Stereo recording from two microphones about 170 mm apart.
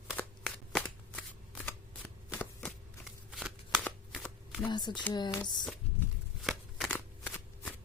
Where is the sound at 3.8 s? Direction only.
10° left (ahead or behind).